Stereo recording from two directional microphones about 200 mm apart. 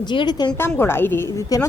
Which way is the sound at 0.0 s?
20° left (ahead or behind).